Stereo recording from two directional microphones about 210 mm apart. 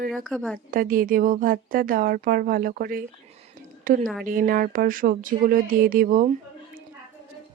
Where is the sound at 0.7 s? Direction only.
40° right (ahead or behind).